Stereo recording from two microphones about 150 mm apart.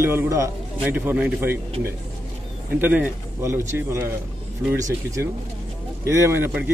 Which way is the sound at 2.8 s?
10° right (ahead or behind).